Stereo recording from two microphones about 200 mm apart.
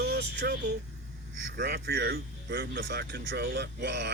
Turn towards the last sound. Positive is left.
turn(degrees=-60)  # may be behind; listen again after turning